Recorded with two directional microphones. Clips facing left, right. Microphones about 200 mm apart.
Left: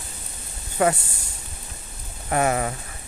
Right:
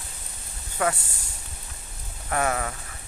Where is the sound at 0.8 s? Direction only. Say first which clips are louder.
Left 5 dB; 25° left (ahead or behind).